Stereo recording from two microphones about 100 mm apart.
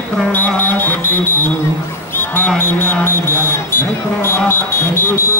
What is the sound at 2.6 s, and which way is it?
Speech, 20° left (ahead or behind).